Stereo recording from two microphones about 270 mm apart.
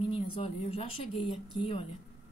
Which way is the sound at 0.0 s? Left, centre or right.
Centre.